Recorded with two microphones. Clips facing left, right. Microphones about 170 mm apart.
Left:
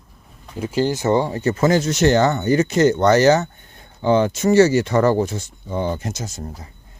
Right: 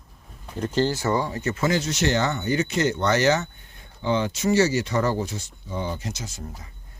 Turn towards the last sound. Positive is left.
turn(degrees=45)  # may be behind; listen again after turning